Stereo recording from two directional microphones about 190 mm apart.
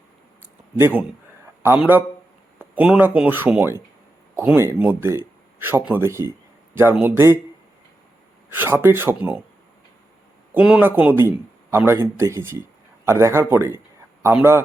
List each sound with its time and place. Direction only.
0.8 s speech: 10° right (ahead or behind)
8.4 s speech: 10° right (ahead or behind)
10.5 s a man's voice: 5° right (ahead or behind)